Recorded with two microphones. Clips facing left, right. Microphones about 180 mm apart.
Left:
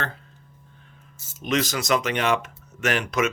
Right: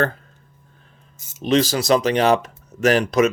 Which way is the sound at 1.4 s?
30° right (ahead or behind).